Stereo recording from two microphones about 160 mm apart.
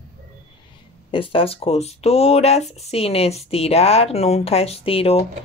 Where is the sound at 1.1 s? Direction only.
35° left (ahead or behind).